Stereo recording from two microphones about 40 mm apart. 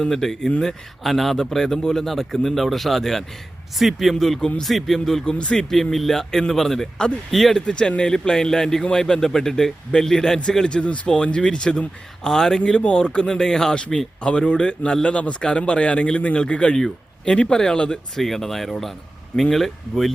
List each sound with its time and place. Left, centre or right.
0.1 s speech: centre
4.1 s speech: centre
4.4 s a man's voice: left
4.6 s speech: centre
5.2 s a man's voice: left
5.7 s speech: centre
7.7 s speech: left
10.8 s a man's voice: left
18.2 s speech: centre